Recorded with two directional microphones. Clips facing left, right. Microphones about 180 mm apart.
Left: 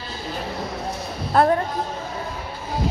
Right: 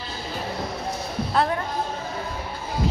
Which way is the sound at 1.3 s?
50° left (ahead or behind).